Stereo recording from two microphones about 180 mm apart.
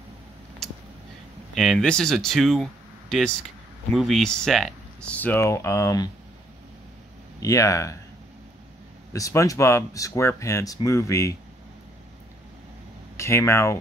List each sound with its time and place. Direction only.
0.6 s a sound: centre (ahead or behind)
1.5 s speech: centre (ahead or behind); by 6.0 s 15° left (ahead or behind)
7.3 s speech: 20° left (ahead or behind)
9.1 s speech: 20° left (ahead or behind)
13.2 s speech: 15° left (ahead or behind)